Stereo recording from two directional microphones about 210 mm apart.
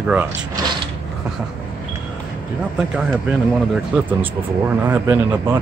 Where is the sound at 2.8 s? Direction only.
5° right (ahead or behind).